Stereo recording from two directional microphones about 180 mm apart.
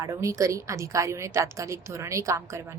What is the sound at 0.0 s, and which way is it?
A woman's voice, 15° right (ahead or behind).